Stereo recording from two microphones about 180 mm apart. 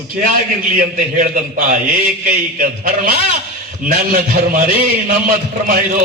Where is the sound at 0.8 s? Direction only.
50° right (ahead or behind).